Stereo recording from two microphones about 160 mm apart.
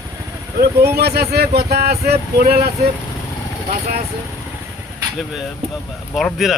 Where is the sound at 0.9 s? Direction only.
90° right.